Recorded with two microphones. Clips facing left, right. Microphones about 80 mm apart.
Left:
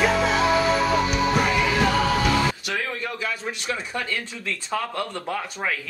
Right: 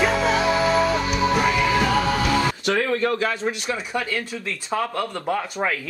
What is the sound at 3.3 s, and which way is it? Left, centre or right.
Speech, right.